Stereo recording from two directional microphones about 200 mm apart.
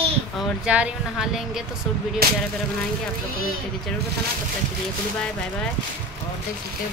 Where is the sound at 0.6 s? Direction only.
5° right (ahead or behind).